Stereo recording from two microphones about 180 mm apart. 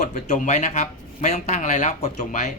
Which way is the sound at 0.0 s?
40° left (ahead or behind).